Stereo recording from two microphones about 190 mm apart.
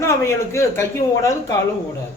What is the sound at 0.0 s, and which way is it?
Speech, 15° left (ahead or behind).